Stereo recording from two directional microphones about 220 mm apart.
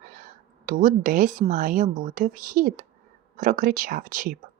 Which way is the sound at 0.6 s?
40° right (ahead or behind).